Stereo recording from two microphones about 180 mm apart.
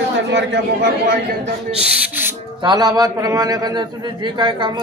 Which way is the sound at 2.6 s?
25° right (ahead or behind).